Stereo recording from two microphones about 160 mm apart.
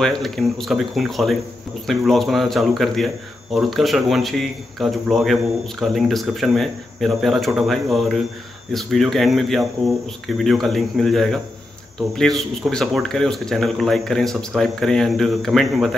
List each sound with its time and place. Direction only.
0.0 s a man's voice: centre (ahead or behind)